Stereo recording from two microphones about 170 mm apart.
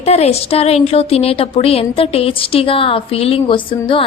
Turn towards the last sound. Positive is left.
turn(degrees=30)  # may be behind; listen again after turning